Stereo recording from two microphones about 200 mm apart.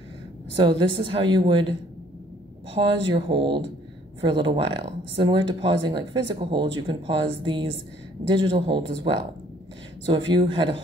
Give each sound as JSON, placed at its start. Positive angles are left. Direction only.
{"t": 0.6, "sound": "speech", "side_deg": -25}
{"t": 2.9, "sound": "speech", "side_deg": -25}